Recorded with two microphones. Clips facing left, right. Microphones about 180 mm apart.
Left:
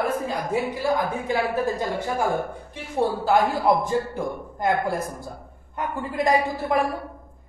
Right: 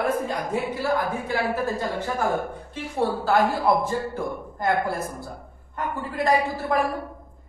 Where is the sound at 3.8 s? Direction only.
15° left (ahead or behind).